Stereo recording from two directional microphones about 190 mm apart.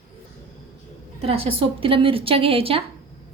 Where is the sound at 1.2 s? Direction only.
30° right (ahead or behind).